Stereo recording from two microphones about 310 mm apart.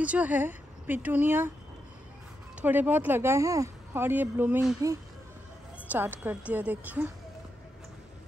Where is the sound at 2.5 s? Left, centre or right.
Centre.